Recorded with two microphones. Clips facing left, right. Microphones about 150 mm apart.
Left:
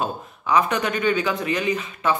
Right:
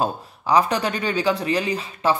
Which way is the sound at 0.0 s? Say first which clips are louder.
Right 3 dB; 35° right (ahead or behind).